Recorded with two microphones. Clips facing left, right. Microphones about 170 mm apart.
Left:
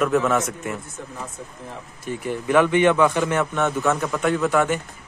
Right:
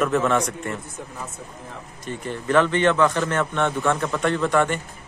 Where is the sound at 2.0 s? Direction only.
10° left (ahead or behind).